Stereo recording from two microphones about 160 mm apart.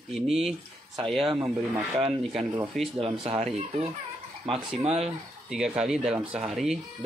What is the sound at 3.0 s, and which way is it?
Speech, 35° right (ahead or behind).